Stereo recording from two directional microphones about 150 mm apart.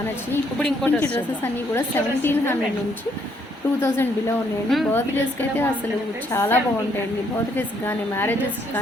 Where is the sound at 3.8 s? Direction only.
15° left (ahead or behind).